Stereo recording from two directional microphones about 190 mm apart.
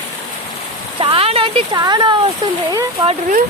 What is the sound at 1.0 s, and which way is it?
Speech, 30° right (ahead or behind).